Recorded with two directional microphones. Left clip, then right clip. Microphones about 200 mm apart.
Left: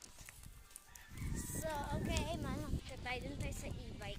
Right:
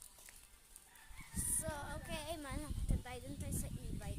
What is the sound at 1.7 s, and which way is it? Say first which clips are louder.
Female singing: left 8 dB; centre (ahead or behind).